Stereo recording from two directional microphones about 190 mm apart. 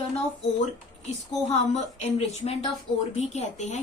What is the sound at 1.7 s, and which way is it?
Speech, 35° left (ahead or behind).